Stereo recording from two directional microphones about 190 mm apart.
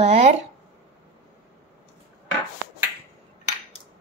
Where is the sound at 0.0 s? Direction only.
35° right (ahead or behind).